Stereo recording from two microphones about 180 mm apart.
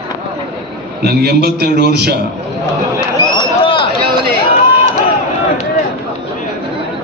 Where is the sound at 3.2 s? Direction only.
25° left (ahead or behind).